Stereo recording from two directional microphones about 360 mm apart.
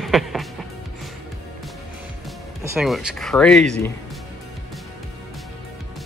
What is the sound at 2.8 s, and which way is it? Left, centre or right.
Speech, centre.